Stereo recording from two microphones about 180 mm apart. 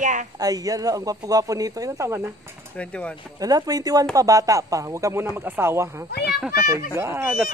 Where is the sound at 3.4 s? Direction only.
20° right (ahead or behind).